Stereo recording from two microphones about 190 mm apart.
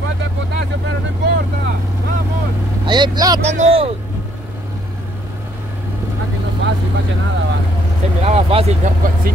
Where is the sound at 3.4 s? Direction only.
35° right (ahead or behind).